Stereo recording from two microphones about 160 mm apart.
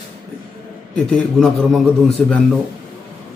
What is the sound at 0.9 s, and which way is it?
A man's voice, 5° left (ahead or behind).